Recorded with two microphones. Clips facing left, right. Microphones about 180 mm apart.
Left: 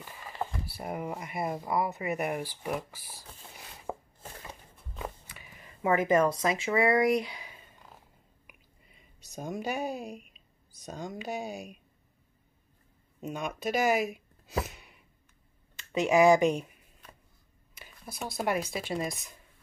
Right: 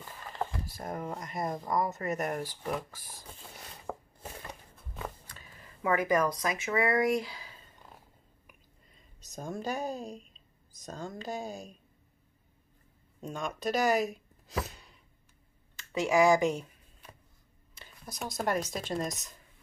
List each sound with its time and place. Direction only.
0.0 s speech: 10° left (ahead or behind)
3.5 s chopping: 5° left (ahead or behind)
5.0 s a sound: 10° left (ahead or behind)
9.3 s speech: 10° left (ahead or behind)
13.2 s speech: 10° left (ahead or behind)
14.5 s a sound: 15° left (ahead or behind)
15.7 s speech: 20° left (ahead or behind)
17.7 s speech: 5° left (ahead or behind)